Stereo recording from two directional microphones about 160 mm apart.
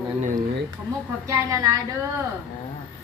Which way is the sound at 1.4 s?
20° right (ahead or behind).